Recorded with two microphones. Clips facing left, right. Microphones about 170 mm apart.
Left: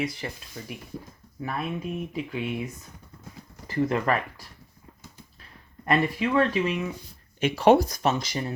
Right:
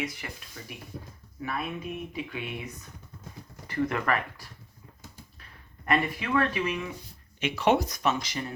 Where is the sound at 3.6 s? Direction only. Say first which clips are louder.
Left 4 dB; 35° left (ahead or behind).